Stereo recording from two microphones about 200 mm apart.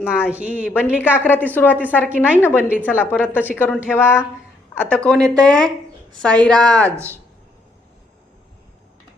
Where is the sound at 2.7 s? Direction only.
10° right (ahead or behind).